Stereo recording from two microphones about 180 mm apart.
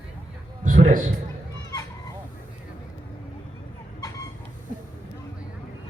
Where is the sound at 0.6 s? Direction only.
45° right (ahead or behind).